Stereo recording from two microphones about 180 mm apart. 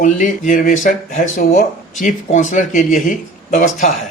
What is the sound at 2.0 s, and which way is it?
Speech, 45° left (ahead or behind).